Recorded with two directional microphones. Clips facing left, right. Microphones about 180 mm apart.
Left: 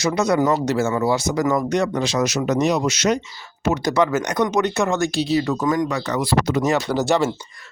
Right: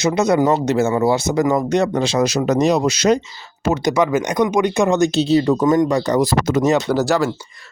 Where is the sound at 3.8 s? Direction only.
15° right (ahead or behind); by 6.6 s 45° right (ahead or behind).